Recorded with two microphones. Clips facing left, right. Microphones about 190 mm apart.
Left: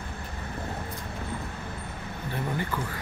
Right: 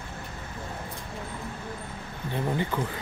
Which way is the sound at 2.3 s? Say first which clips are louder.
Right 3 dB; 20° right (ahead or behind).